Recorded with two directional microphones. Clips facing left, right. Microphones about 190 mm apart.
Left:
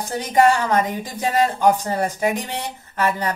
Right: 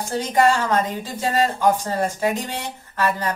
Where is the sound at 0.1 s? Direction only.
15° left (ahead or behind).